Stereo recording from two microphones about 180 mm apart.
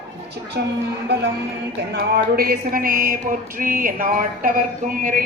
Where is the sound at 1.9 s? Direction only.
60° right (ahead or behind).